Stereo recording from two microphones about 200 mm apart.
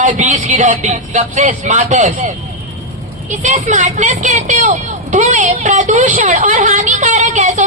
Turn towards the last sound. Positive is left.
turn(degrees=-35)  # may be behind; listen again after turning